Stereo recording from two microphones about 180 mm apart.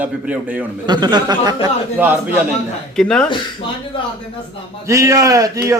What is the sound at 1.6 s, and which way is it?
Speech, 10° right (ahead or behind).